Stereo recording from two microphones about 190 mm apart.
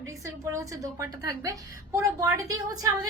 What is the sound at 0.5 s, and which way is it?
A woman's voice, 15° right (ahead or behind).